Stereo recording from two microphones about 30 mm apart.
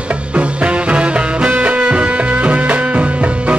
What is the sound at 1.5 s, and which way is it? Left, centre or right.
Music, right.